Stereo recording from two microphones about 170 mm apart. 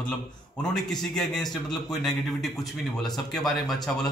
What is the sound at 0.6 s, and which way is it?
A man's voice, centre (ahead or behind).